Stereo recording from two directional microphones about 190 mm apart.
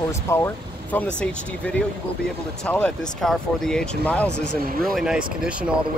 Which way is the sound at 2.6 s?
5° left (ahead or behind).